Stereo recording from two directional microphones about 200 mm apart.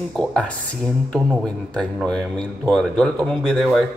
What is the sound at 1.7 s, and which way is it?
Speech, 5° left (ahead or behind).